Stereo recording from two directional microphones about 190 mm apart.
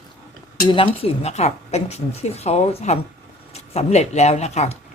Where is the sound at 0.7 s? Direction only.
30° left (ahead or behind).